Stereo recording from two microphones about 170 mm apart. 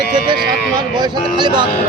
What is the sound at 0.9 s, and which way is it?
Speech, 25° right (ahead or behind).